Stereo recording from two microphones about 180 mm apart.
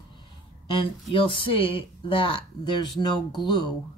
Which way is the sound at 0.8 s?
30° left (ahead or behind).